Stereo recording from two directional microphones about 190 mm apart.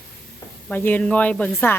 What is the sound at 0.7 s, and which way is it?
A woman's voice, 10° left (ahead or behind).